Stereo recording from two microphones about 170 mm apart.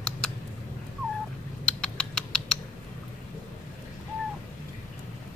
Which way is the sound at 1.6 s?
5° left (ahead or behind).